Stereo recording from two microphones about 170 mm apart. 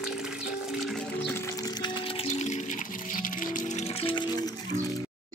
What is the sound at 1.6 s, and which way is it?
Music, 25° left (ahead or behind).